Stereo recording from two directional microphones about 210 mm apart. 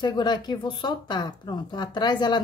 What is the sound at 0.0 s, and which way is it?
Speech, 20° left (ahead or behind).